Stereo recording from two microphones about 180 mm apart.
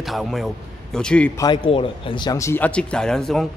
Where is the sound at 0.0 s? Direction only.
Centre (ahead or behind).